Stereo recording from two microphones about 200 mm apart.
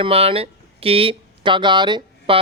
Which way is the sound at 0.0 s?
30° right (ahead or behind).